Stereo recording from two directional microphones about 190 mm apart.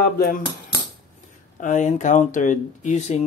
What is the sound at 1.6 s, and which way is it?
Speech, 40° left (ahead or behind).